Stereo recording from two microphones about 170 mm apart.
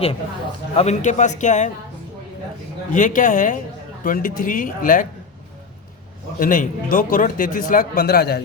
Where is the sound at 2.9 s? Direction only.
50° left (ahead or behind).